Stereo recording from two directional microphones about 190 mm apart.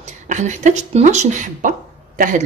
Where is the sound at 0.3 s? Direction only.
40° right (ahead or behind).